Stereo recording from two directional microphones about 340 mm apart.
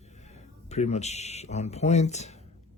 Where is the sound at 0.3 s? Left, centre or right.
Centre.